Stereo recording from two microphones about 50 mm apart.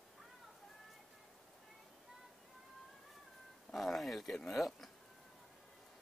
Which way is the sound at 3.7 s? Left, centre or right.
Centre.